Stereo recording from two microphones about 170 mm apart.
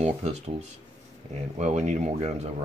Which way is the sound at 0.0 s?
40° right (ahead or behind).